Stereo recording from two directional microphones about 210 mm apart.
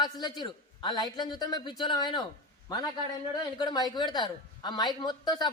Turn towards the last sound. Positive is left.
turn(degrees=20)  # may be behind; listen again after turning